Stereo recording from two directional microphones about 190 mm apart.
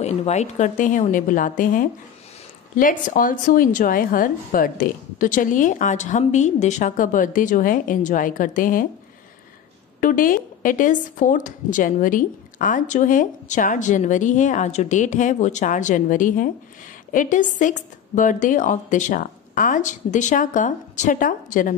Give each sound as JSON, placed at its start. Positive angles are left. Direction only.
{"t": 0.0, "sound": "speech", "side_deg": 35}
{"t": 9.9, "sound": "speech", "side_deg": 45}